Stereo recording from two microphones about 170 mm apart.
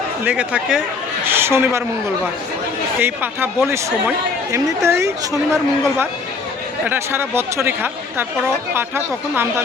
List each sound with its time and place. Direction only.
0.3 s speech: 10° right (ahead or behind)
3.0 s speech: 10° right (ahead or behind)
6.8 s speech: 15° right (ahead or behind)
9.3 s speech: 15° right (ahead or behind)